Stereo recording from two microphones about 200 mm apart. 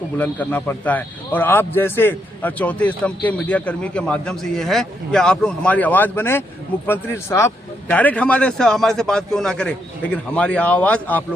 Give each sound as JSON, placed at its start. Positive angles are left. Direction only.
{"t": 0.2, "sound": "a man's voice", "side_deg": 10}